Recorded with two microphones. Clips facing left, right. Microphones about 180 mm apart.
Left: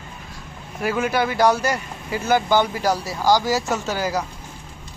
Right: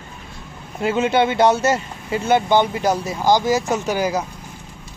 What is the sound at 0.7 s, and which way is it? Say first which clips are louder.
Speech: right 4 dB; 25° right (ahead or behind).